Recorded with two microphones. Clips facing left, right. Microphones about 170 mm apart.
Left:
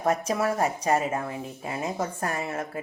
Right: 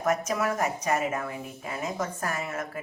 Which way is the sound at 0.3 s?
30° left (ahead or behind).